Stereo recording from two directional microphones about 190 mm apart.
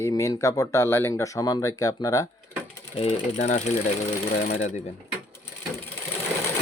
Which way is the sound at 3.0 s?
30° left (ahead or behind).